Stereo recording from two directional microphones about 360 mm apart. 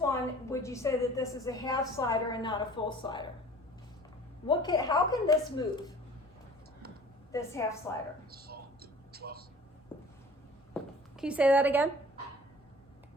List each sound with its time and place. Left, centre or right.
0.0 s a woman's voice: centre
4.4 s a woman's voice: centre
7.3 s a woman's voice: centre
8.3 s a sound: right
11.2 s a woman's voice: centre